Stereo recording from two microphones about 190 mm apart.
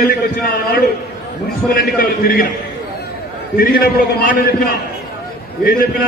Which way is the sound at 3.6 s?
50° left (ahead or behind).